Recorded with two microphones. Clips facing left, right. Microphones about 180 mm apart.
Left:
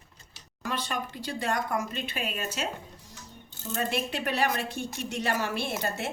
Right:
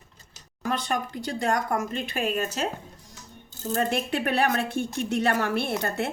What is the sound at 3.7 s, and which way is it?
Speech, 50° right (ahead or behind).